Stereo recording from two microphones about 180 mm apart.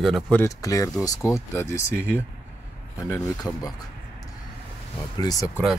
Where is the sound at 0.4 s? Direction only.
20° left (ahead or behind).